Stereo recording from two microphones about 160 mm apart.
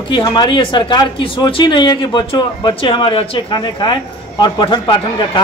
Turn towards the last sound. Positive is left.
turn(degrees=30)  # may be behind; listen again after turning